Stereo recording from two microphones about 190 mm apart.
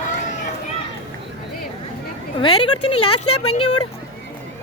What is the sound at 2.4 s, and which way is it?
Speech, 25° left (ahead or behind).